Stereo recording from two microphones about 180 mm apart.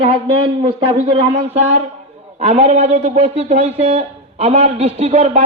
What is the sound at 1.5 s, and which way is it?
A man's voice, 35° right (ahead or behind).